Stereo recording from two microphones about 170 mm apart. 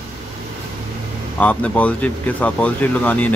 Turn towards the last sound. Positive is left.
turn(degrees=10)  # may be behind; listen again after turning